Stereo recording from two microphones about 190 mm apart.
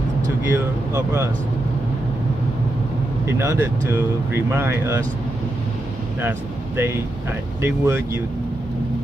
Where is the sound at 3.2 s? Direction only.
15° right (ahead or behind).